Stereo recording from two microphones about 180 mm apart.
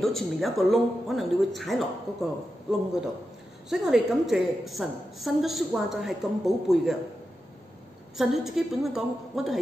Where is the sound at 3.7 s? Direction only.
Centre (ahead or behind).